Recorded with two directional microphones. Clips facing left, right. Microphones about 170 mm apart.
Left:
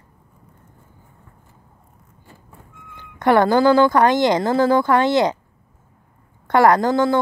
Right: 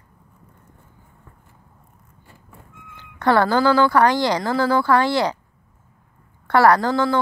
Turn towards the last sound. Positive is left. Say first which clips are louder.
# left 2 dB
turn(degrees=20)  # may be behind; listen again after turning